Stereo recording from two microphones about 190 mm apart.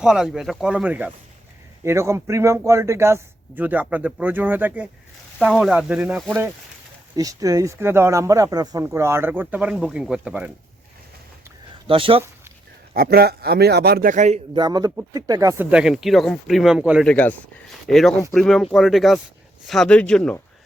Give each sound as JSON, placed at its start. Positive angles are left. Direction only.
{"t": 0.0, "sound": "speech", "side_deg": 0}
{"t": 7.2, "sound": "speech", "side_deg": -20}
{"t": 11.9, "sound": "speech", "side_deg": -30}
{"t": 12.9, "sound": "a man's voice", "side_deg": -55}
{"t": 14.5, "sound": "speech", "side_deg": -20}
{"t": 15.7, "sound": "speech", "side_deg": 0}
{"t": 17.1, "sound": "speech", "side_deg": 5}